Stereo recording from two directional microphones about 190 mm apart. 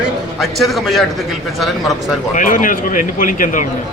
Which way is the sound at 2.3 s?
45° left (ahead or behind).